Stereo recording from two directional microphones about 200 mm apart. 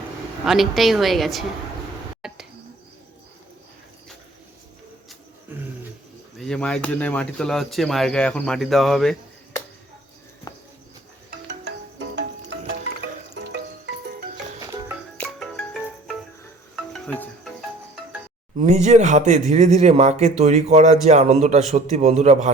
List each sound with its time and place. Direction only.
0.4 s speech: centre (ahead or behind)
6.4 s speech: 5° left (ahead or behind)
10.5 s a sound: 20° left (ahead or behind)
11.3 s music: 60° right (ahead or behind)
15.2 s music: 5° left (ahead or behind)
18.5 s speech: 35° right (ahead or behind)